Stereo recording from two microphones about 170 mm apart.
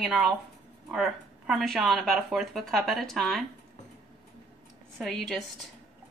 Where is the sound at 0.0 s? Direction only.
Centre (ahead or behind).